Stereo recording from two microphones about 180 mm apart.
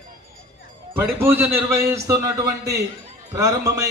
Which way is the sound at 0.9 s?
10° right (ahead or behind).